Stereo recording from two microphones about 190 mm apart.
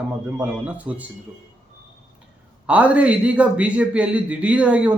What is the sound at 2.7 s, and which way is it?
A man's voice, 5° right (ahead or behind).